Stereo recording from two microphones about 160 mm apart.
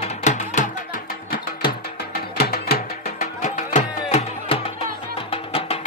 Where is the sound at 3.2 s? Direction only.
45° left (ahead or behind).